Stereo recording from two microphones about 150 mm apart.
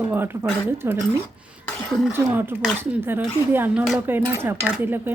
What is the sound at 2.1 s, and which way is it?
Speech, 15° right (ahead or behind).